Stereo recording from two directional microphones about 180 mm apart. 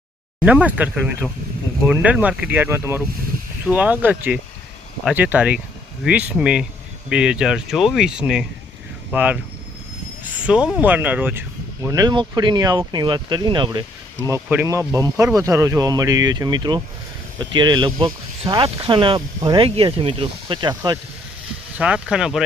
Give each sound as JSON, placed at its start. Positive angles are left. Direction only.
{"t": 0.4, "sound": "speech", "side_deg": -10}
{"t": 14.3, "sound": "speech", "side_deg": -15}
{"t": 21.8, "sound": "speech", "side_deg": -5}